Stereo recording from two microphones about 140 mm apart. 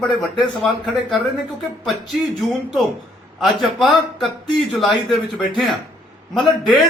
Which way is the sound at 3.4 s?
Centre (ahead or behind).